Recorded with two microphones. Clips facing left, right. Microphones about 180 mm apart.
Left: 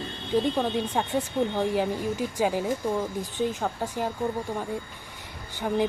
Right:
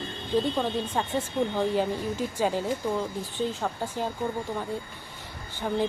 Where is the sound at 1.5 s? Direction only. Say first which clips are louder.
Even; 10° left (ahead or behind).